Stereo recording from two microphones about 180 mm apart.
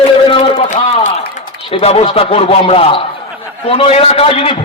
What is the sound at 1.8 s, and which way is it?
A man's voice, 35° left (ahead or behind).